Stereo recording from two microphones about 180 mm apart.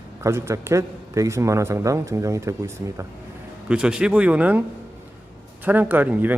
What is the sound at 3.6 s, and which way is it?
A man's voice, 5° right (ahead or behind).